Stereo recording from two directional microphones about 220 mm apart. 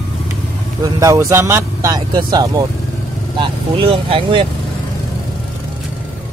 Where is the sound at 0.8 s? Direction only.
15° right (ahead or behind).